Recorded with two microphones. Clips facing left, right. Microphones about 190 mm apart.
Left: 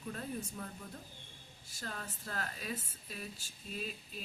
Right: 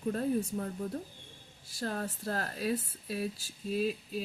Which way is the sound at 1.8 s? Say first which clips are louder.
Right 10 dB; 45° right (ahead or behind).